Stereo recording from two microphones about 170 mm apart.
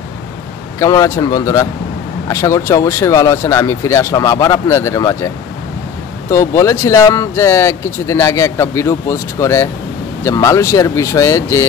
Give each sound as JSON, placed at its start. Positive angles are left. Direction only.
{"t": 0.7, "sound": "speech", "side_deg": 20}
{"t": 6.3, "sound": "speech", "side_deg": 20}